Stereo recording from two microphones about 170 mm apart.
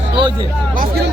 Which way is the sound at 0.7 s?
55° right (ahead or behind).